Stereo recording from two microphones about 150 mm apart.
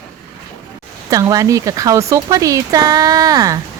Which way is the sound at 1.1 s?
25° right (ahead or behind).